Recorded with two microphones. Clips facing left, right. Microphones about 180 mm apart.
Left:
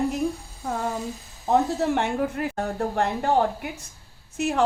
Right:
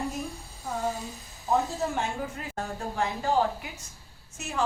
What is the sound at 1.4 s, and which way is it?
A woman's voice, 70° left (ahead or behind).